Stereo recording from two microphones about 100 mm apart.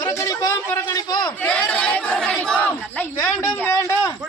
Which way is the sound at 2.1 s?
5° left (ahead or behind).